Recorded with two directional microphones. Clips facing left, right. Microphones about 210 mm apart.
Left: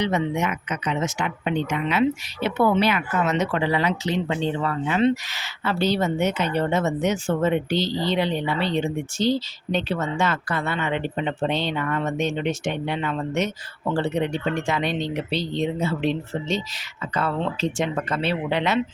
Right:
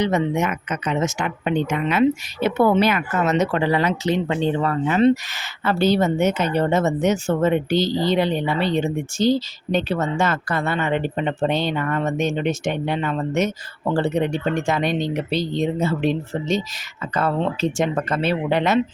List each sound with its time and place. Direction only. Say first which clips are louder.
0.0 s speech: right 3 dB; 45° right (ahead or behind)